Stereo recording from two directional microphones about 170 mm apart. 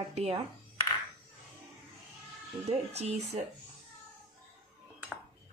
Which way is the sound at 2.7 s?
35° right (ahead or behind).